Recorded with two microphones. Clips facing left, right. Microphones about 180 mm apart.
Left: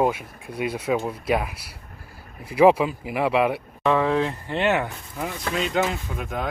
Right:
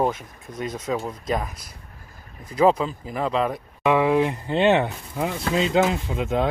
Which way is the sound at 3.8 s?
10° right (ahead or behind).